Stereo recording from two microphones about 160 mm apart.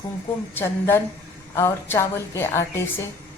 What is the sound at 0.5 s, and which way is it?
A woman's voice, 15° left (ahead or behind).